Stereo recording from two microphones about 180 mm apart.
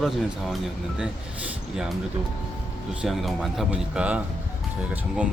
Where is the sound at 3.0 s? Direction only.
Centre (ahead or behind).